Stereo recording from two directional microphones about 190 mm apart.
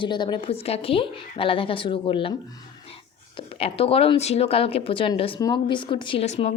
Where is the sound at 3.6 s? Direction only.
30° left (ahead or behind).